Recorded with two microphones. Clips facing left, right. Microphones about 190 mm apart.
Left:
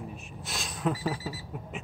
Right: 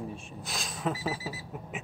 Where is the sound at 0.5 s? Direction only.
Centre (ahead or behind).